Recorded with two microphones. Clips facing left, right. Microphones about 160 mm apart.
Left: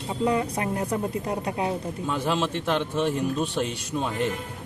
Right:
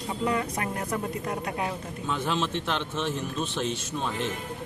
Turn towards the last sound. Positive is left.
turn(degrees=10)  # may be behind; listen again after turning